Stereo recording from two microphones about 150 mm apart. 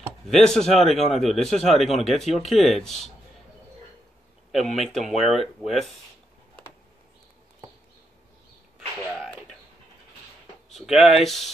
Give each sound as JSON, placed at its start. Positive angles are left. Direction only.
{"t": 0.3, "sound": "a man's voice", "side_deg": 0}
{"t": 4.7, "sound": "a man's voice", "side_deg": 0}
{"t": 10.7, "sound": "a man's voice", "side_deg": 0}